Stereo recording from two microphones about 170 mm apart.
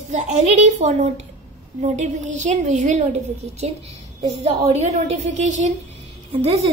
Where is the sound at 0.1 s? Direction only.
45° right (ahead or behind).